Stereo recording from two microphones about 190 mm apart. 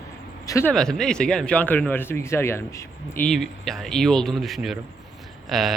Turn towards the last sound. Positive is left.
turn(degrees=0)  # may be behind; listen again after turning